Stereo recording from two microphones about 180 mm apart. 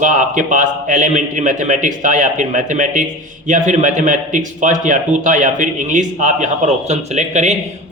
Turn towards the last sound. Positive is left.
turn(degrees=-40)  # may be behind; listen again after turning